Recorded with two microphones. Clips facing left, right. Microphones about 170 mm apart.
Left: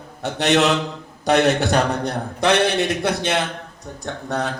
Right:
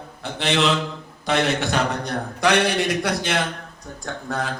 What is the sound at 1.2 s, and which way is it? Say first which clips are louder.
Speech: left 5 dB; 40° left (ahead or behind).